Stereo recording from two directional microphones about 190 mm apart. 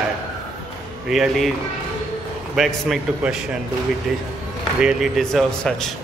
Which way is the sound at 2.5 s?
Centre (ahead or behind).